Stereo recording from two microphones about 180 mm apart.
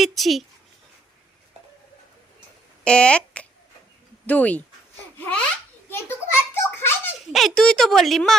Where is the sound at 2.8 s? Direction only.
5° left (ahead or behind).